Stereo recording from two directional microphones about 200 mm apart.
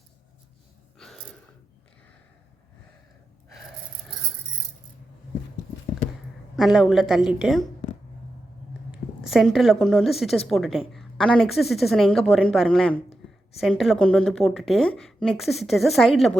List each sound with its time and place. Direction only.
0.9 s gasp: centre (ahead or behind)
6.6 s a woman's voice: centre (ahead or behind)
8.9 s a woman's voice: centre (ahead or behind)